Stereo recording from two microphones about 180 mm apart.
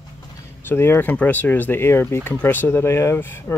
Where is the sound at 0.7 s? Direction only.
10° left (ahead or behind).